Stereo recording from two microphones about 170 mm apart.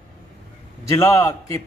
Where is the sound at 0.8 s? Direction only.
15° left (ahead or behind).